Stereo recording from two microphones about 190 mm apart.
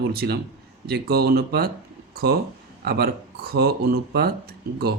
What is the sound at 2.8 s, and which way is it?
Speech, 55° right (ahead or behind).